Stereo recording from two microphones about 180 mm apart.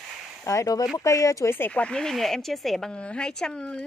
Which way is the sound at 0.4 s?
15° left (ahead or behind).